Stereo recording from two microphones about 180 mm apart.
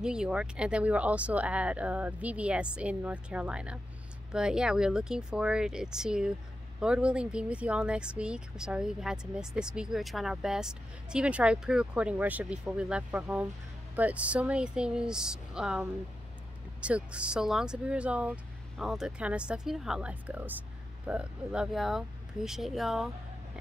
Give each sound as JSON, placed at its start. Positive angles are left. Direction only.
{"t": 0.0, "sound": "speech", "side_deg": -5}